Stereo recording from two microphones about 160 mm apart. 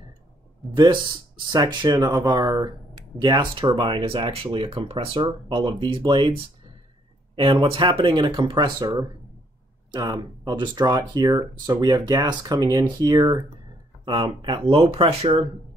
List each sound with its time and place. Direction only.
0.6 s speech: centre (ahead or behind)
1.5 s speech: 25° right (ahead or behind)
7.7 s speech: 35° right (ahead or behind)